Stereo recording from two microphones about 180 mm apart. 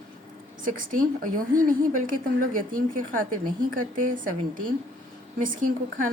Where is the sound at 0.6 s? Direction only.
50° right (ahead or behind).